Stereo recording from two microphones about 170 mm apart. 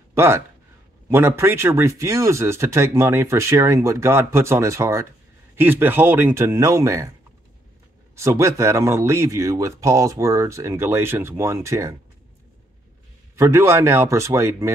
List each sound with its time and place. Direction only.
0.1 s speech: 15° right (ahead or behind)
8.2 s speech: 15° right (ahead or behind)
13.4 s speech: 15° right (ahead or behind)